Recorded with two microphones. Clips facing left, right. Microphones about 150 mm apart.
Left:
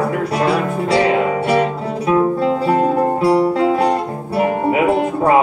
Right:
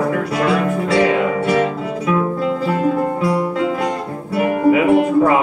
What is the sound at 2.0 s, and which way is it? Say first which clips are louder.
Guitar: left 4 dB; 30° left (ahead or behind).